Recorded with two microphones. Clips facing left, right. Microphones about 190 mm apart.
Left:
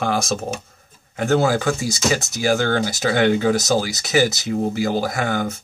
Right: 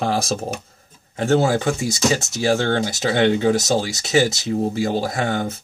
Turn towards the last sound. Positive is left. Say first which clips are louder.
# even
turn(degrees=-25)  # may be behind; listen again after turning